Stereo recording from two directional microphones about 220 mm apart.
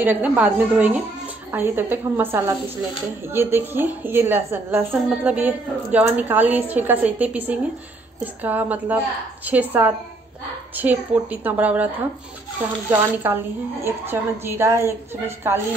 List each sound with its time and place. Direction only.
0.0 s a woman's voice: 5° right (ahead or behind)
12.9 s a woman's voice: 10° right (ahead or behind)